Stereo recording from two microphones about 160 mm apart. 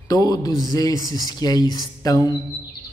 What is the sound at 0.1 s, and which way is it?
A man's voice, 20° left (ahead or behind).